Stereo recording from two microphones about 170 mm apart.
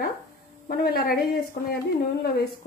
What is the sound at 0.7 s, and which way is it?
Speech, 65° left (ahead or behind).